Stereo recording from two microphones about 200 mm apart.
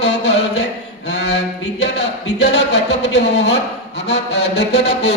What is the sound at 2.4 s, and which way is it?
Music, 60° left (ahead or behind).